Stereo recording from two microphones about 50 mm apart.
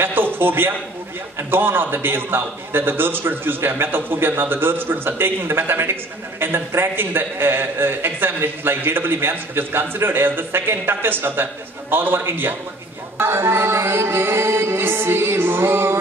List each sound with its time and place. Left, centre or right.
0.0 s a man's voice: right
13.2 s music: right